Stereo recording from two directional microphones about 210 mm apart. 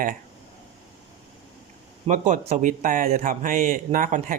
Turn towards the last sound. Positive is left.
turn(degrees=-40)  # may be behind; listen again after turning